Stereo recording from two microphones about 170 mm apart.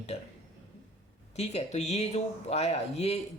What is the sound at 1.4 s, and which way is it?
Speech, 40° left (ahead or behind).